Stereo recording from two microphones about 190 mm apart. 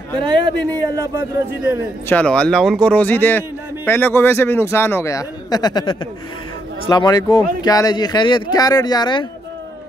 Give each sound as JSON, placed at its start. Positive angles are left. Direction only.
{"t": 0.2, "sound": "a man's voice", "side_deg": -25}
{"t": 2.0, "sound": "speech", "side_deg": 5}